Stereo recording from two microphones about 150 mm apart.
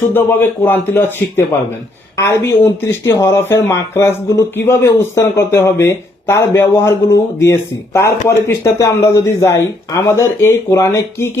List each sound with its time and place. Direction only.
0.1 s speech: 15° left (ahead or behind)